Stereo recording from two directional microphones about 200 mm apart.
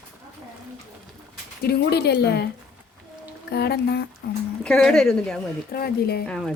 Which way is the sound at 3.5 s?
55° left (ahead or behind).